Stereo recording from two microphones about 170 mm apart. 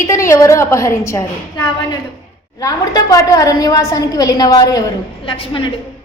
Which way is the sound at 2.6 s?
20° left (ahead or behind).